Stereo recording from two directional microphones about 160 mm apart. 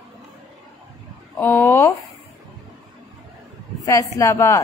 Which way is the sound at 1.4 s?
15° left (ahead or behind).